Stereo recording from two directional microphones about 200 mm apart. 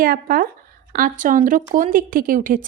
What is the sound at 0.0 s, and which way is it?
Speech, 45° right (ahead or behind).